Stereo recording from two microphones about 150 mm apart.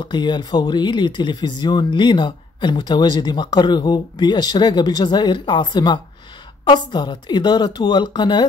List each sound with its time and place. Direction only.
0.0 s speech: 30° left (ahead or behind)